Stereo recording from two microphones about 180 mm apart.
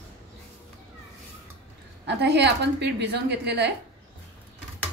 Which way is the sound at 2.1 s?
70° right (ahead or behind).